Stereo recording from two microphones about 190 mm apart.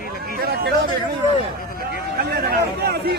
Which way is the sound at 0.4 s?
55° right (ahead or behind).